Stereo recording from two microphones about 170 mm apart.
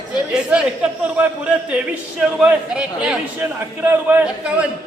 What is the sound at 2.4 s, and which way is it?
A man's voice, 5° right (ahead or behind).